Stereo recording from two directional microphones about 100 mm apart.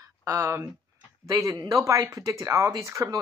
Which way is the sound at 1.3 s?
35° right (ahead or behind).